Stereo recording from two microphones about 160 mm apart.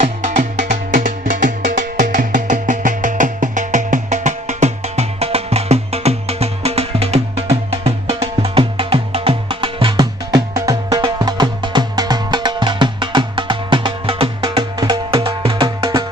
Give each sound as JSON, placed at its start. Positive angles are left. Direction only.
{"t": 0.0, "sound": "music", "side_deg": -50}